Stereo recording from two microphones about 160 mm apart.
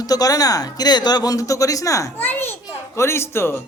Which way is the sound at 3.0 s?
15° left (ahead or behind).